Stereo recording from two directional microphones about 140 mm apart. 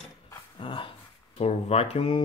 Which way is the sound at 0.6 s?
40° left (ahead or behind).